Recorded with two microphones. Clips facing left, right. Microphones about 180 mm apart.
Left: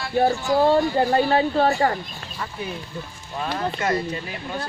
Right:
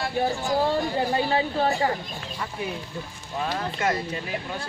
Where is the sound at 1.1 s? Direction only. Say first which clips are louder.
Left 6 dB; 60° left (ahead or behind).